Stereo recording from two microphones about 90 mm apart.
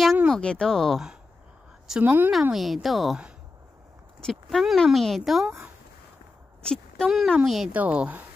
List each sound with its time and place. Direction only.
0.3 s speech: 10° left (ahead or behind)
2.0 s speech: 20° right (ahead or behind)
2.5 s speech: centre (ahead or behind)
4.2 s speech: centre (ahead or behind)
6.6 s a sound: 10° left (ahead or behind)
7.1 s speech: centre (ahead or behind)
7.7 s speech: 15° right (ahead or behind)